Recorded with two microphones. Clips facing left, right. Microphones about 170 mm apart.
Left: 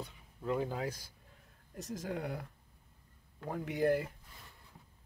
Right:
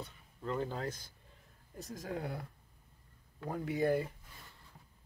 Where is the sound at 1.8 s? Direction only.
75° left (ahead or behind).